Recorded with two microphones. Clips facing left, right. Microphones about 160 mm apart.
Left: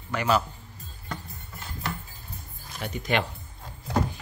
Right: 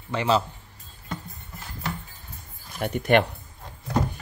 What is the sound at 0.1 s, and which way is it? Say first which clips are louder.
Speech: right 2 dB; 25° right (ahead or behind).